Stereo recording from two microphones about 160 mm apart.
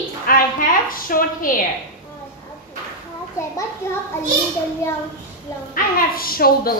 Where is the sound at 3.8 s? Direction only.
15° left (ahead or behind).